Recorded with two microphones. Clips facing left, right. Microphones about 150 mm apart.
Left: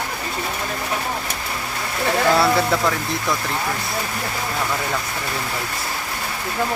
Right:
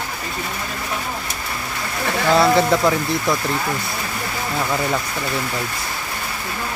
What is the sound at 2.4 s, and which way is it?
Speech, 20° right (ahead or behind).